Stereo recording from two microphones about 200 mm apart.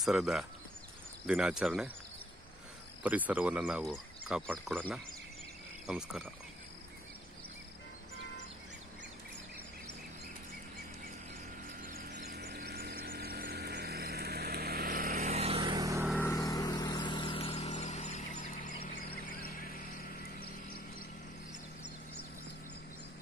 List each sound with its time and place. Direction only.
0.0 s speech: centre (ahead or behind)
3.0 s speech: 5° right (ahead or behind)
11.8 s vehicle: 45° right (ahead or behind)
15.1 s vehicle: 30° right (ahead or behind); by 16.1 s 15° right (ahead or behind)
16.2 s vehicle: 15° left (ahead or behind); by 19.8 s 50° left (ahead or behind)